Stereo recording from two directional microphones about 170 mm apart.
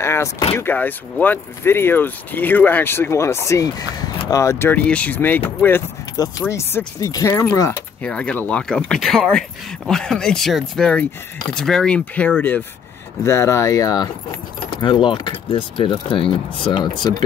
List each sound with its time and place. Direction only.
0.0 s vehicle: 15° left (ahead or behind)
0.6 s speech: 10° left (ahead or behind)
8.0 s speech: 5° left (ahead or behind); by 17.2 s 25° left (ahead or behind)